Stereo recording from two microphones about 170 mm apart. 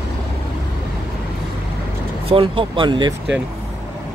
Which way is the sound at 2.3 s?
30° right (ahead or behind).